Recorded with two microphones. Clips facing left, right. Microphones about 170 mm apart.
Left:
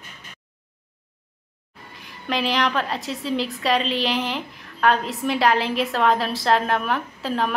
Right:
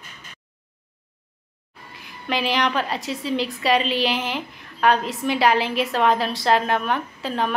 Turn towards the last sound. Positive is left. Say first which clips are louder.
# even
turn(degrees=0)  # may be behind; listen again after turning